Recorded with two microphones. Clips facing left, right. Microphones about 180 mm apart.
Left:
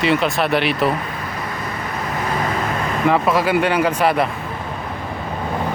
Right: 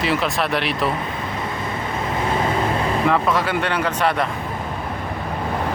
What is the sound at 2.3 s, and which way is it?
Vehicle, 25° right (ahead or behind).